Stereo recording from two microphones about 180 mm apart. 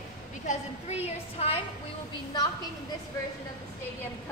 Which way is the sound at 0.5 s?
35° left (ahead or behind).